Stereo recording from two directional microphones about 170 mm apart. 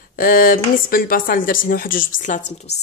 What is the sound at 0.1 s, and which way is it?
Speech, 55° left (ahead or behind).